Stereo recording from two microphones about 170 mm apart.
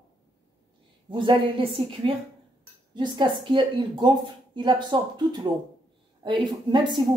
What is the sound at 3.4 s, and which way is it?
Speech, 30° right (ahead or behind).